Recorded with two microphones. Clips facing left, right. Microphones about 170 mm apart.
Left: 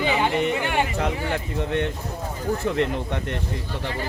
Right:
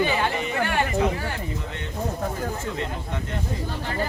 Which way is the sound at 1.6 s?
65° left (ahead or behind).